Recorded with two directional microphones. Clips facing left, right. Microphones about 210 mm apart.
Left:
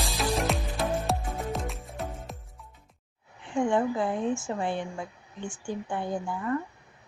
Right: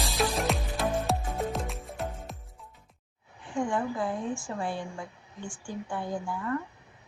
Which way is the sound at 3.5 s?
25° left (ahead or behind).